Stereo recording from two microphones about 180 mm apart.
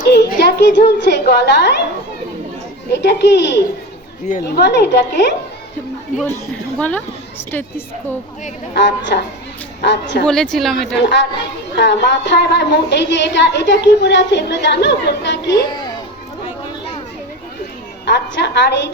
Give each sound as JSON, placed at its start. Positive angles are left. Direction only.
{"t": 0.0, "sound": "a woman's voice", "side_deg": 65}
{"t": 2.9, "sound": "a woman's voice", "side_deg": 70}
{"t": 6.7, "sound": "a woman's voice", "side_deg": 5}
{"t": 9.1, "sound": "a woman's voice", "side_deg": 65}
{"t": 10.2, "sound": "a woman's voice", "side_deg": 5}
{"t": 10.9, "sound": "a woman's voice", "side_deg": 70}
{"t": 18.0, "sound": "a woman's voice", "side_deg": 70}